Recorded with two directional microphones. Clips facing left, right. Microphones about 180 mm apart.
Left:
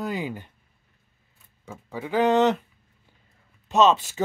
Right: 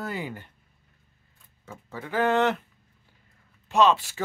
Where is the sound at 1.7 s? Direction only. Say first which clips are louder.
Left 5 dB; 15° left (ahead or behind).